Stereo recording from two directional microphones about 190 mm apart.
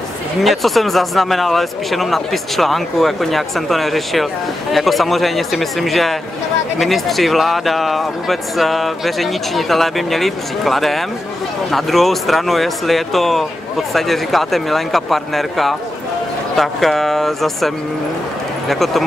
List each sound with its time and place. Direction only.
0.4 s speech: centre (ahead or behind)